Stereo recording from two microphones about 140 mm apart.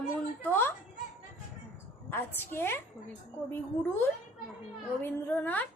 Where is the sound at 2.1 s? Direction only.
15° left (ahead or behind).